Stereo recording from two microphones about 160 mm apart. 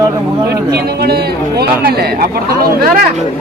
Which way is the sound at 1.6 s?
65° right (ahead or behind).